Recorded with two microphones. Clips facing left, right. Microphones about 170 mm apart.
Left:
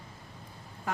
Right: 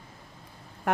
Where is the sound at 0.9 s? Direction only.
65° right (ahead or behind).